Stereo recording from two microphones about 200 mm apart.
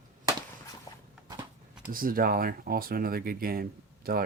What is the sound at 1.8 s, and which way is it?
Speech, 45° right (ahead or behind).